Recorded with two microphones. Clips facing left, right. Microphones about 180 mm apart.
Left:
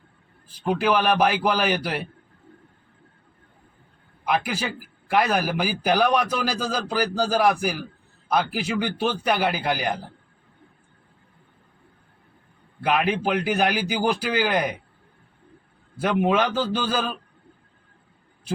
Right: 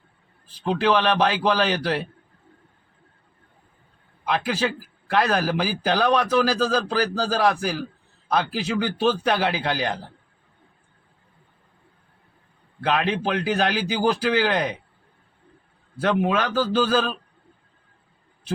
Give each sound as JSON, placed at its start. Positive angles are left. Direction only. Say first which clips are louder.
{"t": 0.6, "sound": "a man's voice", "louder": "right 1 dB", "side_deg": 10}
{"t": 4.3, "sound": "a man's voice", "louder": "right 1 dB", "side_deg": 15}
{"t": 12.8, "sound": "a man's voice", "louder": "left 1 dB", "side_deg": 15}
{"t": 16.2, "sound": "a man's voice", "louder": "left 1 dB", "side_deg": 20}